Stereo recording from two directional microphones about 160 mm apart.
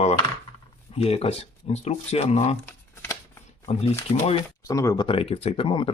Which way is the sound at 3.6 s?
40° left (ahead or behind).